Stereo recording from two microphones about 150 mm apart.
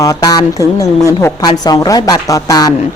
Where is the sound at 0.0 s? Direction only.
25° left (ahead or behind).